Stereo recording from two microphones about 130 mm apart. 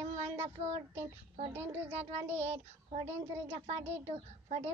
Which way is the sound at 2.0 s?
55° right (ahead or behind).